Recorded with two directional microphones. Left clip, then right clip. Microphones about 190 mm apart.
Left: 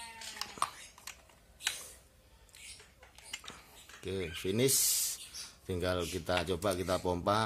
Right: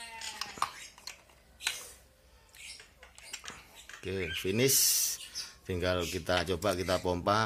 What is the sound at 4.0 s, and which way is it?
Speech, 5° left (ahead or behind).